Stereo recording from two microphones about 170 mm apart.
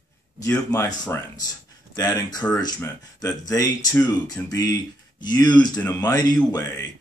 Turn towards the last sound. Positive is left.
turn(degrees=20)  # may be behind; listen again after turning